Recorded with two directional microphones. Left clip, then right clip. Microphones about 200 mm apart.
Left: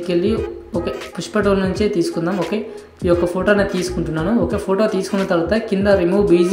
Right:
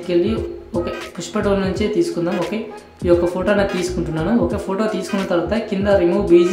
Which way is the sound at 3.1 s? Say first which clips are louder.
Even; 15° left (ahead or behind).